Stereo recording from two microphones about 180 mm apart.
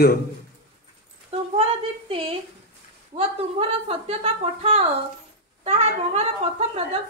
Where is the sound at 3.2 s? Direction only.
35° right (ahead or behind).